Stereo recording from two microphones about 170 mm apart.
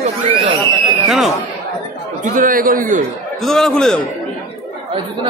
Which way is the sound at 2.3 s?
55° right (ahead or behind).